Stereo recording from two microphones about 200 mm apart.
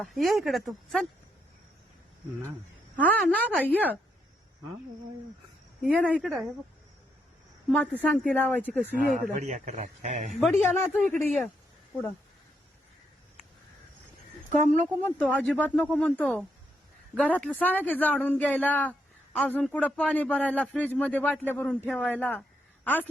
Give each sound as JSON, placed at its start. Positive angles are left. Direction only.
{"t": 0.0, "sound": "speech", "side_deg": 0}
{"t": 3.0, "sound": "speech", "side_deg": 5}
{"t": 5.9, "sound": "speech", "side_deg": 5}
{"t": 6.1, "sound": "speech", "side_deg": -5}
{"t": 7.7, "sound": "speech", "side_deg": 5}
{"t": 9.3, "sound": "speech", "side_deg": -35}
{"t": 10.4, "sound": "speech", "side_deg": 5}
{"t": 14.5, "sound": "speech", "side_deg": -40}
{"t": 15.0, "sound": "speech", "side_deg": 5}